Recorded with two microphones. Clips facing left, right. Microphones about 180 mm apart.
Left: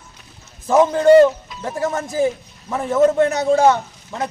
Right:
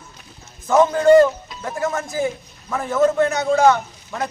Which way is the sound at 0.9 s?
25° left (ahead or behind).